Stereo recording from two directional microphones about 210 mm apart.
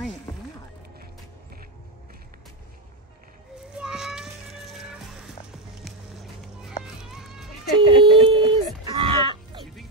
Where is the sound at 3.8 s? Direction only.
5° right (ahead or behind).